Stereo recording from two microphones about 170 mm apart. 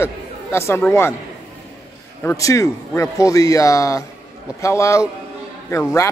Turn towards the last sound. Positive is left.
turn(degrees=15)  # may be behind; listen again after turning